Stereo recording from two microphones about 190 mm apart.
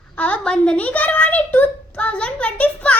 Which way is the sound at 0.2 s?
5° left (ahead or behind).